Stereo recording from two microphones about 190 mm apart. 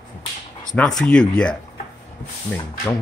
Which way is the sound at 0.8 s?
5° left (ahead or behind).